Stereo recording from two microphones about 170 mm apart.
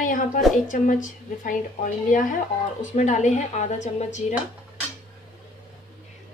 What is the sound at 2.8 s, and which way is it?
Speech, 45° left (ahead or behind).